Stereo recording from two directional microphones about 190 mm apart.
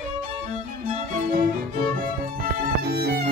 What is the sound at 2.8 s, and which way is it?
Music, 55° right (ahead or behind).